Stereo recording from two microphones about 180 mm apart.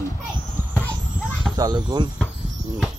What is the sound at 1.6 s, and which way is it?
Speech, 25° right (ahead or behind).